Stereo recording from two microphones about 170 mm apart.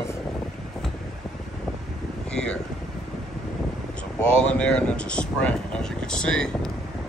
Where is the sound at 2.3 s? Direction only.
5° left (ahead or behind).